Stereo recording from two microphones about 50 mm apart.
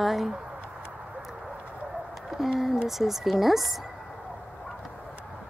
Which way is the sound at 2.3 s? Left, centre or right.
Centre.